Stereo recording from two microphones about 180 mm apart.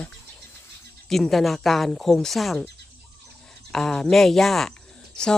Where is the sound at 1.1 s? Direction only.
Centre (ahead or behind).